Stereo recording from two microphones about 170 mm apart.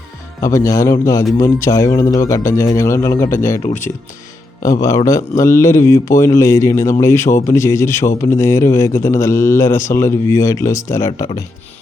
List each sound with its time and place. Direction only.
0.4 s speech: 20° left (ahead or behind)
4.6 s speech: 20° left (ahead or behind)